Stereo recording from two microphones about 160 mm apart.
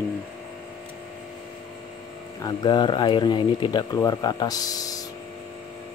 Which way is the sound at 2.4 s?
25° left (ahead or behind).